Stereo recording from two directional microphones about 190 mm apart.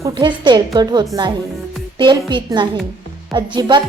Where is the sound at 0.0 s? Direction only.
25° right (ahead or behind).